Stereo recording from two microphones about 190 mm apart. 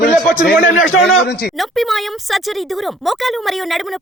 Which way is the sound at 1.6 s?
Centre (ahead or behind).